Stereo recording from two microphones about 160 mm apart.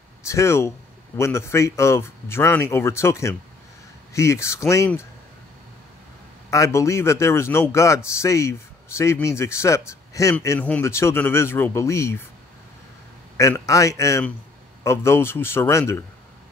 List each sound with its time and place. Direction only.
0.3 s a man's voice: 15° left (ahead or behind)
6.5 s a man's voice: 20° left (ahead or behind)
13.4 s a man's voice: 20° left (ahead or behind)